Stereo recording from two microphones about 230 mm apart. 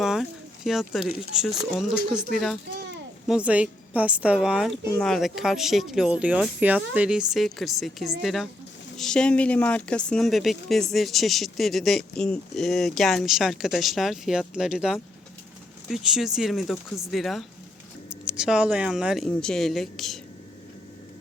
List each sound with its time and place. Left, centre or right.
0.0 s speech: centre
2.7 s a sound: right
3.2 s speech: centre